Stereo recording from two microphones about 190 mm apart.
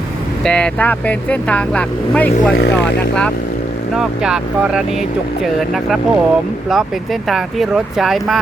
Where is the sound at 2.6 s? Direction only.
60° left (ahead or behind).